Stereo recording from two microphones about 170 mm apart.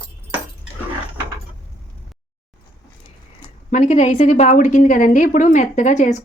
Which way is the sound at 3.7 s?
45° left (ahead or behind).